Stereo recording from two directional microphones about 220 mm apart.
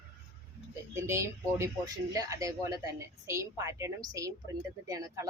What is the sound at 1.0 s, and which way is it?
A woman's voice, 15° right (ahead or behind).